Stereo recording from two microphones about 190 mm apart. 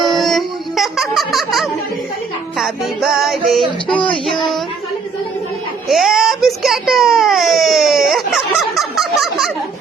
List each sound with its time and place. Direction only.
0.0 s music: centre (ahead or behind)
2.6 s a child's voice: centre (ahead or behind)
5.9 s a child's voice: centre (ahead or behind)